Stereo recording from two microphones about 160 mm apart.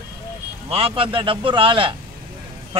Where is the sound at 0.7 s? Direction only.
35° right (ahead or behind).